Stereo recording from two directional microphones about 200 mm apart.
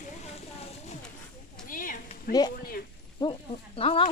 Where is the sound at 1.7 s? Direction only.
40° left (ahead or behind).